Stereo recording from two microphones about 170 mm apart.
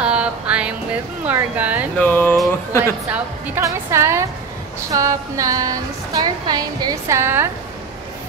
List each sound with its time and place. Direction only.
0.0 s music: 5° right (ahead or behind)
1.2 s speech: 10° right (ahead or behind)
2.0 s a sound: 10° left (ahead or behind)
2.8 s a woman's voice: 10° right (ahead or behind)